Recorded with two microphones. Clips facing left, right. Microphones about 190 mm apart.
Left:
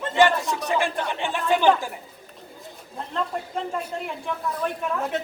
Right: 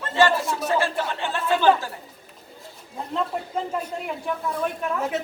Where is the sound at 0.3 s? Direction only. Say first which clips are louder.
Right 1 dB; 5° right (ahead or behind).